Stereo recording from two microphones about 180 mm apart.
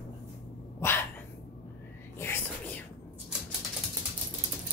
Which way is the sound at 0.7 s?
10° left (ahead or behind).